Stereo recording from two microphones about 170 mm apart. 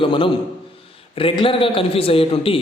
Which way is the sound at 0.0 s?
30° left (ahead or behind).